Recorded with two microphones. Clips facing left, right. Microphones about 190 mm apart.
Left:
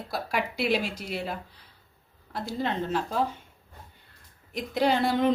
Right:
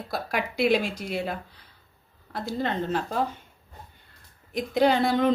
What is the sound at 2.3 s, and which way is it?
Speech, 5° left (ahead or behind).